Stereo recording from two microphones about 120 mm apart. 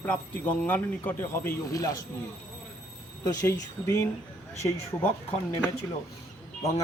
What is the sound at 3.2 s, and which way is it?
Speech, 30° left (ahead or behind).